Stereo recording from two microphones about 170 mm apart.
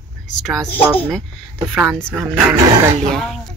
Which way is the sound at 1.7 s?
Centre (ahead or behind).